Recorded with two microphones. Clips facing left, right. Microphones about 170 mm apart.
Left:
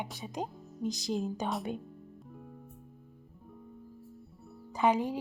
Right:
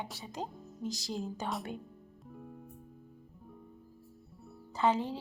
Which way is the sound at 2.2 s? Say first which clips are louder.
Right 4 dB; centre (ahead or behind).